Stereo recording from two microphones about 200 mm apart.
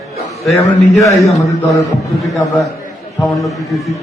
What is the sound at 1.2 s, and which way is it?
Speech, centre (ahead or behind).